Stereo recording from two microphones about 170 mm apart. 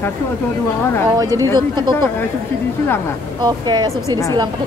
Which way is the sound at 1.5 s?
25° right (ahead or behind).